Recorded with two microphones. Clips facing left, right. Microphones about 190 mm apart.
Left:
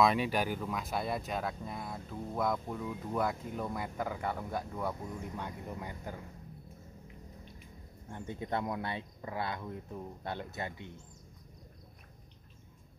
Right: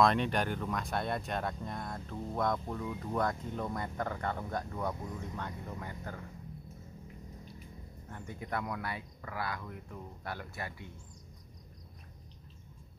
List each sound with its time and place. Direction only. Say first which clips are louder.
0.0 s speech: even; 5° left (ahead or behind)
8.1 s speech: left 3 dB; 25° left (ahead or behind)